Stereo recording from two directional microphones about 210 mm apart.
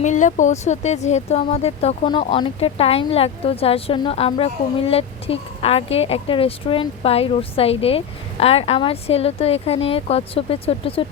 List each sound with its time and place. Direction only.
0.0 s speech: 35° left (ahead or behind)